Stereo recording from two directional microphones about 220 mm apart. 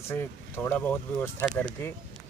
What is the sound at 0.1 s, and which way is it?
Speech, 10° left (ahead or behind).